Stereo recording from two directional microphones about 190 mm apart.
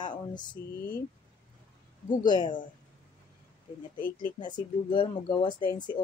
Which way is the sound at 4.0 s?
50° left (ahead or behind).